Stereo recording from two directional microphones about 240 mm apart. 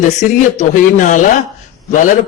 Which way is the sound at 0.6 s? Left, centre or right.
Left.